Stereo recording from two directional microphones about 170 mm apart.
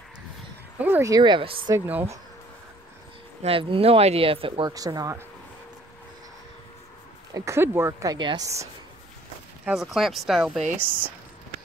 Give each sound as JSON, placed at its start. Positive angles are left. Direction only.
{"t": 0.7, "sound": "speech", "side_deg": -10}
{"t": 1.9, "sound": "speech", "side_deg": -10}
{"t": 3.4, "sound": "speech", "side_deg": -35}
{"t": 7.3, "sound": "speech", "side_deg": -15}
{"t": 9.7, "sound": "speech", "side_deg": 0}